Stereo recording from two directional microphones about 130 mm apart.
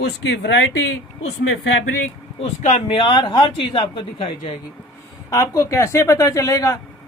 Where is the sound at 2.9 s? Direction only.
40° left (ahead or behind).